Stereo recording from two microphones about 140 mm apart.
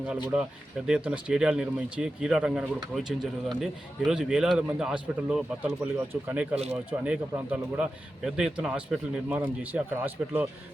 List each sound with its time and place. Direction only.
0.9 s speech: 5° right (ahead or behind)